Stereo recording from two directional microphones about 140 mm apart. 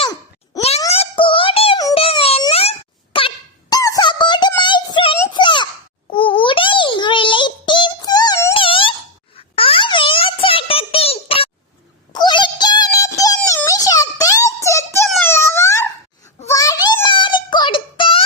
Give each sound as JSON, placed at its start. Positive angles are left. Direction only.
{"t": 0.9, "sound": "synthetic singing", "side_deg": 40}
{"t": 2.0, "sound": "music", "side_deg": 45}
{"t": 2.5, "sound": "wail", "side_deg": 45}
{"t": 3.8, "sound": "a sound", "side_deg": 25}
{"t": 6.1, "sound": "child singing", "side_deg": 40}
{"t": 8.5, "sound": "a sound", "side_deg": 40}
{"t": 12.1, "sound": "synthetic singing", "side_deg": 30}
{"t": 13.7, "sound": "music", "side_deg": 25}
{"t": 15.2, "sound": "wail", "side_deg": 15}
{"t": 16.5, "sound": "a sound", "side_deg": 25}